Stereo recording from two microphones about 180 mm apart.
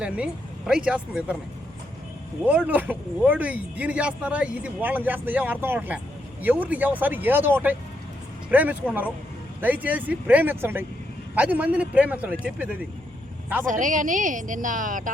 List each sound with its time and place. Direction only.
0.7 s speech: 5° right (ahead or behind)
2.5 s speech: 10° right (ahead or behind)
13.7 s a woman's voice: 45° right (ahead or behind)